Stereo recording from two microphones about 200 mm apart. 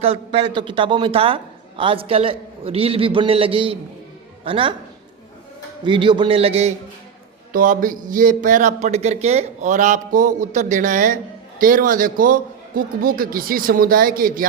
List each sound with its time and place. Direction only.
0.0 s a man's voice: 30° right (ahead or behind)
5.8 s a man's voice: 25° right (ahead or behind)
7.5 s a man's voice: 45° right (ahead or behind)